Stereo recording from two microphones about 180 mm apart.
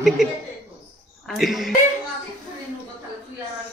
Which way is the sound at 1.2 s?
Centre (ahead or behind).